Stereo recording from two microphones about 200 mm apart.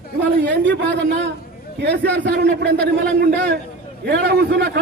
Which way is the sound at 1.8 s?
60° right (ahead or behind).